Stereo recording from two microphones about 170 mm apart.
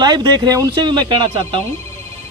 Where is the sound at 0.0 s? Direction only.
25° right (ahead or behind).